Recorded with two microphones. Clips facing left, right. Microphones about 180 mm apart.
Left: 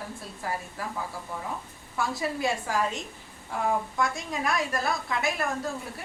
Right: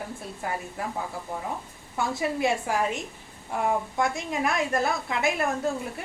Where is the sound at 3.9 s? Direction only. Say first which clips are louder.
Right 3 dB; 25° right (ahead or behind).